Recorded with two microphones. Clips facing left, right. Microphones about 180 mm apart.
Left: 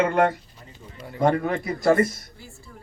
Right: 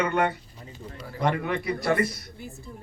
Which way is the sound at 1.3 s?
45° left (ahead or behind).